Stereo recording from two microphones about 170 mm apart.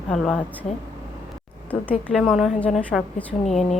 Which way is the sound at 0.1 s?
Centre (ahead or behind).